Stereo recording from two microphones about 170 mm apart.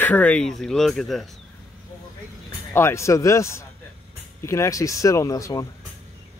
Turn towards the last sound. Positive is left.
turn(degrees=20)  # may be behind; listen again after turning